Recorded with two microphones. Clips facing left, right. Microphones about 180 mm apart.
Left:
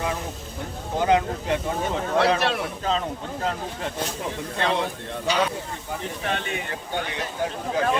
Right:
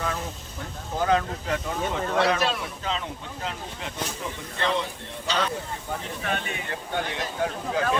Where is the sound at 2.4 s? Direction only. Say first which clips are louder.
Left 2 dB; 65° left (ahead or behind).